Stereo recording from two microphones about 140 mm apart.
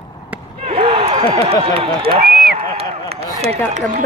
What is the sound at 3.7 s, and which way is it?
Speech, 65° right (ahead or behind).